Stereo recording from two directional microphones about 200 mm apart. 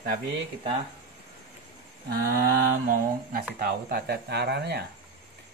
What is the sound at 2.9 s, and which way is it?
Speech, 45° right (ahead or behind).